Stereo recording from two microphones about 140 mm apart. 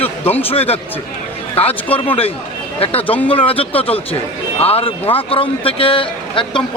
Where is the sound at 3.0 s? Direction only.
10° left (ahead or behind).